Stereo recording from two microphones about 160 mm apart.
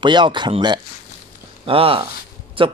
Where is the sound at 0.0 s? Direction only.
30° right (ahead or behind).